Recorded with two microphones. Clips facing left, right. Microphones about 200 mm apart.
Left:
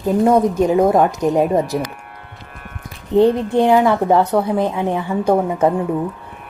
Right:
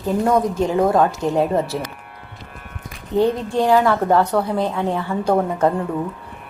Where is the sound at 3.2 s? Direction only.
20° left (ahead or behind).